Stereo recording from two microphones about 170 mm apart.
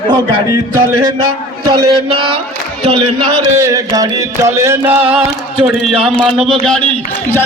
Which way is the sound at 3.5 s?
15° right (ahead or behind).